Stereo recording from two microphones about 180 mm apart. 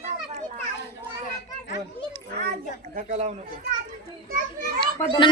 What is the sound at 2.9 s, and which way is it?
Speech, 40° right (ahead or behind).